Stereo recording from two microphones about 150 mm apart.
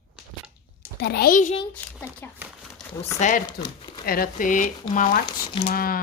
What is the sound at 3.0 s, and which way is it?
Speech, 55° left (ahead or behind).